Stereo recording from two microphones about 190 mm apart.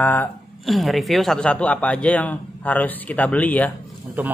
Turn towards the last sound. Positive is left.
turn(degrees=-10)  # may be behind; listen again after turning